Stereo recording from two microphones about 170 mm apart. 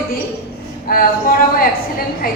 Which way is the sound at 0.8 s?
55° left (ahead or behind).